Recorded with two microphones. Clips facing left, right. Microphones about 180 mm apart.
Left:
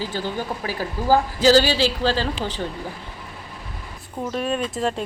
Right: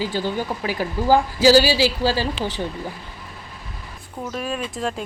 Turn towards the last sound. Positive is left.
turn(degrees=0)  # may be behind; listen again after turning